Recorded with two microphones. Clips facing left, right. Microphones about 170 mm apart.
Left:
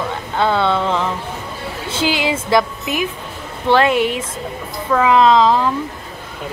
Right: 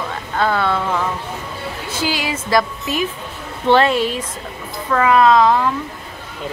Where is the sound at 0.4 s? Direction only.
20° left (ahead or behind).